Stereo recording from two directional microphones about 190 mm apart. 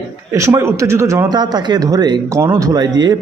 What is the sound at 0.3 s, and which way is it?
A man's voice, 15° right (ahead or behind).